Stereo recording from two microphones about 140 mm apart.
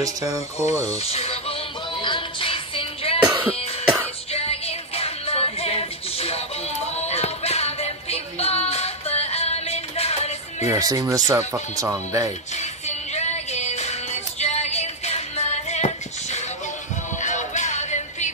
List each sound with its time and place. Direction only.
0.0 s speech: 25° right (ahead or behind)
0.9 s music: 45° left (ahead or behind)
3.3 s music: 15° right (ahead or behind)
4.3 s music: 45° left (ahead or behind)
10.7 s speech: 25° right (ahead or behind)
12.5 s music: 55° left (ahead or behind)